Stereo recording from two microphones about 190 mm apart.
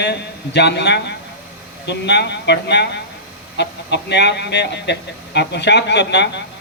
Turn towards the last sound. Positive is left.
turn(degrees=65)  # may be behind; listen again after turning